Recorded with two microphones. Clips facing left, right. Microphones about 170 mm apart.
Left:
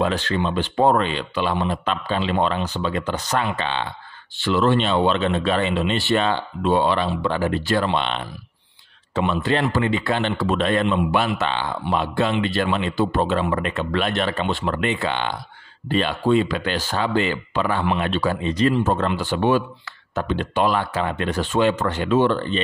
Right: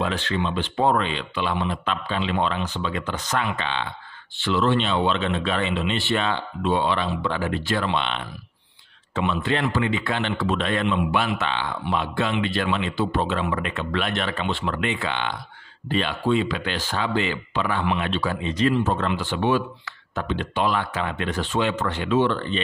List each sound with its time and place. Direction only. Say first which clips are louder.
0.0 s speech: left 3 dB; 45° left (ahead or behind)